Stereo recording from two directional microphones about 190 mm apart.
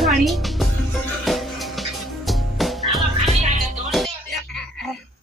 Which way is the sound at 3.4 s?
40° right (ahead or behind).